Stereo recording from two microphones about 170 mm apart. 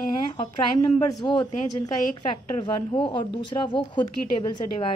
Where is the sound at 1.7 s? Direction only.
25° left (ahead or behind).